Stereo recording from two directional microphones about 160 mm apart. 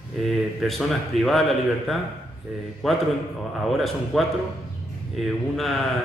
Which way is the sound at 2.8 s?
Centre (ahead or behind).